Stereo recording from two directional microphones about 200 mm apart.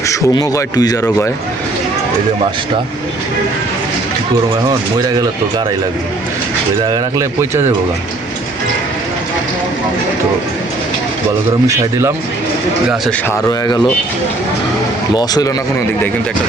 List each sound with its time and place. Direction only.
0.1 s a man's voice: 15° left (ahead or behind)
4.9 s speech: 20° right (ahead or behind)
6.8 s speech: 15° right (ahead or behind)
11.7 s speech: 15° right (ahead or behind)
12.9 s speech: 5° left (ahead or behind)
13.5 s a man's voice: 15° left (ahead or behind)
15.1 s speech: 20° left (ahead or behind)